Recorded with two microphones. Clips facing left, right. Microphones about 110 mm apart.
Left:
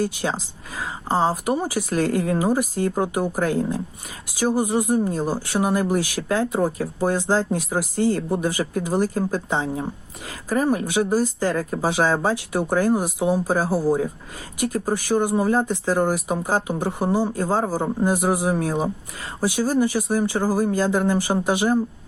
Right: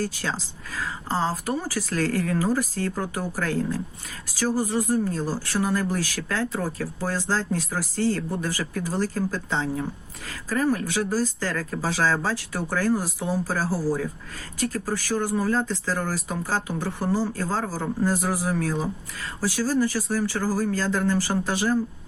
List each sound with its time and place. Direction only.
0.0 s speech: 20° left (ahead or behind)